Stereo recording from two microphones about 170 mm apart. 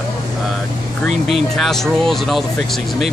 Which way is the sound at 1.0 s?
Centre (ahead or behind).